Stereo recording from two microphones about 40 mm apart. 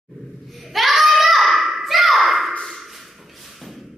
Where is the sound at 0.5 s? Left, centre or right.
Centre.